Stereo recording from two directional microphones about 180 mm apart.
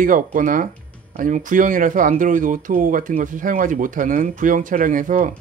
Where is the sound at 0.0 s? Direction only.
50° right (ahead or behind).